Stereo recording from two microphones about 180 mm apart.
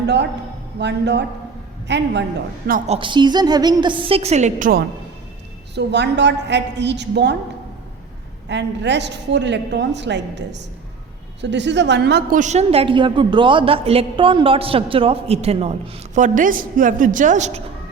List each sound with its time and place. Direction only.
0.0 s a man's voice: 70° right (ahead or behind)
2.8 s a woman's voice: 30° right (ahead or behind)
5.7 s a woman's voice: 70° right (ahead or behind)
8.4 s a woman's voice: 75° right (ahead or behind)
12.3 s a woman's voice: 40° right (ahead or behind)